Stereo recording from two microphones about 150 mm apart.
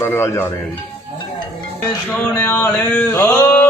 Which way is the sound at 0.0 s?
15° left (ahead or behind).